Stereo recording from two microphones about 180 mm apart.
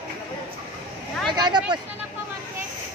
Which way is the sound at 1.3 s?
25° right (ahead or behind).